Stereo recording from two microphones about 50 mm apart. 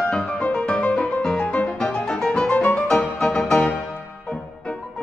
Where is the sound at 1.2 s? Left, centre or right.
Centre.